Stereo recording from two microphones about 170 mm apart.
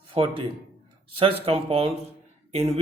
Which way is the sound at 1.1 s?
35° right (ahead or behind).